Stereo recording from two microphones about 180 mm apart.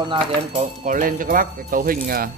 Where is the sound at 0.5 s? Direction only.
45° right (ahead or behind).